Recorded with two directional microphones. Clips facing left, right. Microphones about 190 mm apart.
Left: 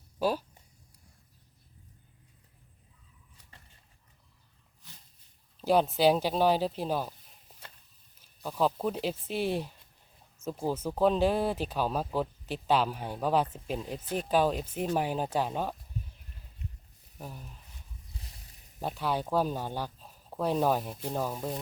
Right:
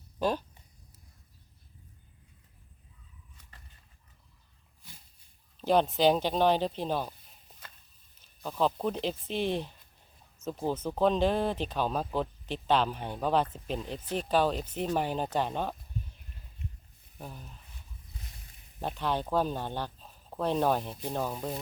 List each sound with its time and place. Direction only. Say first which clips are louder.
0.2 s speech: left 1 dB; 5° left (ahead or behind)
4.8 s a sound: right 1 dB; 10° right (ahead or behind)
5.5 s speech: even; 5° left (ahead or behind)
8.4 s speech: even; 5° left (ahead or behind)
17.2 s speech: left 1 dB; 5° left (ahead or behind)
18.8 s speech: even; 10° left (ahead or behind)